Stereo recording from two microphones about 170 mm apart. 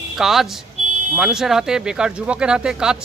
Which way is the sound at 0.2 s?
Centre (ahead or behind).